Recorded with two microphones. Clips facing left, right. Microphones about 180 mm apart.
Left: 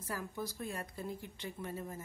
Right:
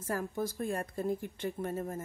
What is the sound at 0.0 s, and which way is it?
A woman's voice, 50° right (ahead or behind).